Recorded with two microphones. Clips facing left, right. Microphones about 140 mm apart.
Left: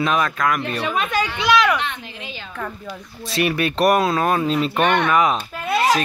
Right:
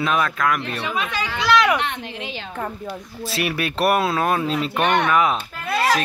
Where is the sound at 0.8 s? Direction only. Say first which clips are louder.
Left 5 dB; 45° left (ahead or behind).